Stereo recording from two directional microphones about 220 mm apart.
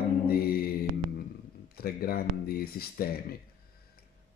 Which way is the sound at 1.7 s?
45° left (ahead or behind).